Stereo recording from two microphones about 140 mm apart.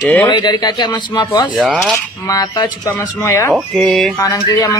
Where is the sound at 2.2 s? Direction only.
30° left (ahead or behind).